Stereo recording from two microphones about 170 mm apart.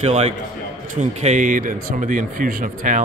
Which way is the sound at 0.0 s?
40° right (ahead or behind).